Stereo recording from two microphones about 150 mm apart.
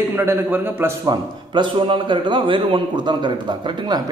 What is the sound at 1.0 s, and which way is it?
A man's voice, 30° right (ahead or behind).